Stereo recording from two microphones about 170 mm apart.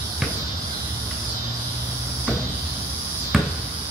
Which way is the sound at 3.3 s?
Centre (ahead or behind).